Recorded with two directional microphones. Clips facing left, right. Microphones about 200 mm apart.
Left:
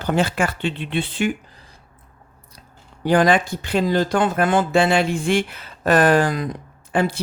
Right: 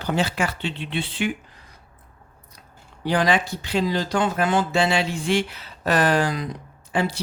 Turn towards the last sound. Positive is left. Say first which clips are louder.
# left 3 dB
turn(degrees=50)  # may be behind; listen again after turning